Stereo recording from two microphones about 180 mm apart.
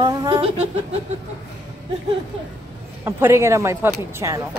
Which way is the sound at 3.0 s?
15° right (ahead or behind).